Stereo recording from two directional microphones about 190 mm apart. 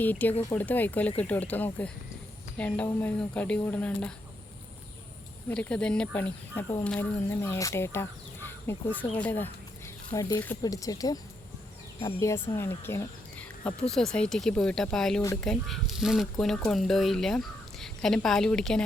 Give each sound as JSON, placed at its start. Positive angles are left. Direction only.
{"t": 0.0, "sound": "speech", "side_deg": 10}
{"t": 5.5, "sound": "speech", "side_deg": 5}